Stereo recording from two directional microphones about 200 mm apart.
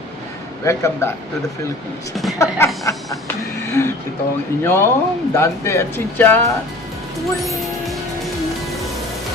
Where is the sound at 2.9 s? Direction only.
15° left (ahead or behind).